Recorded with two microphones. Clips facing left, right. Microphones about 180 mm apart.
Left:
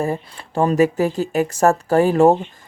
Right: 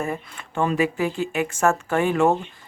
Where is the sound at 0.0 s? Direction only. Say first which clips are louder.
Left 5 dB; 35° left (ahead or behind).